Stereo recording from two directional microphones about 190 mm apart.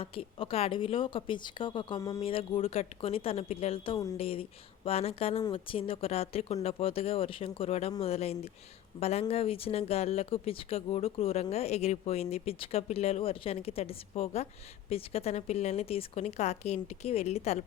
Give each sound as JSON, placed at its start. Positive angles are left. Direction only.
{"t": 0.0, "sound": "a woman's voice", "side_deg": 30}